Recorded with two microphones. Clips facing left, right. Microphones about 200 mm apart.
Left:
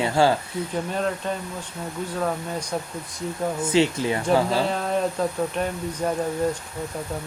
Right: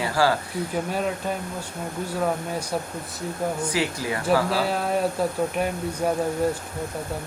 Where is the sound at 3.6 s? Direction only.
25° left (ahead or behind).